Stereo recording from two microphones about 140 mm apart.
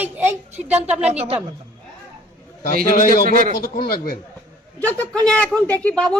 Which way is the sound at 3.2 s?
80° right.